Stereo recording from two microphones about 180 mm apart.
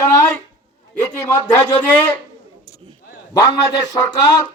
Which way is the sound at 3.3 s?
20° left (ahead or behind).